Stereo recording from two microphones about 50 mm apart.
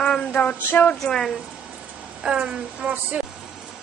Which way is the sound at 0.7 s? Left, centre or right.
Left.